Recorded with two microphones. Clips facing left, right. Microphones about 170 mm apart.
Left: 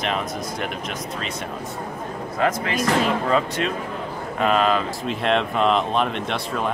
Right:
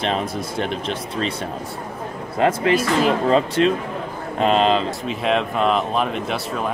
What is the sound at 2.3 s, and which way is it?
Speech, 30° right (ahead or behind).